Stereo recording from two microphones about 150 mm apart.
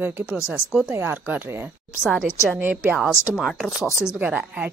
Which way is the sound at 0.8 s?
15° right (ahead or behind).